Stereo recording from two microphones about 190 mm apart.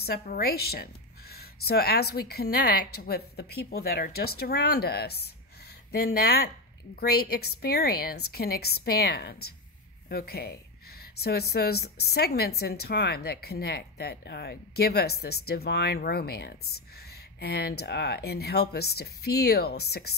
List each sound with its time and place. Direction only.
0.0 s speech: 55° left (ahead or behind)